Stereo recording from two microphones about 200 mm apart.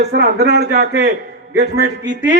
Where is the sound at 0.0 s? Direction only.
55° right (ahead or behind).